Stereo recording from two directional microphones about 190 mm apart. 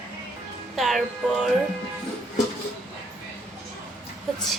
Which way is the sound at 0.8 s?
Centre (ahead or behind).